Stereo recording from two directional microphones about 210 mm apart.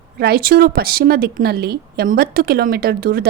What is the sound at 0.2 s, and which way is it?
A woman's voice, 45° right (ahead or behind).